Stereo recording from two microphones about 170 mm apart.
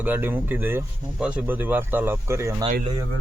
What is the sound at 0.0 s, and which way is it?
Speech, 10° right (ahead or behind).